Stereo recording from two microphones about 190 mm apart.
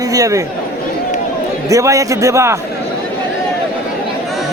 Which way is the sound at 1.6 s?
15° right (ahead or behind).